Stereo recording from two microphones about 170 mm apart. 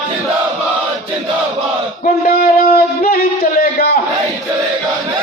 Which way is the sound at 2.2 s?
60° left (ahead or behind).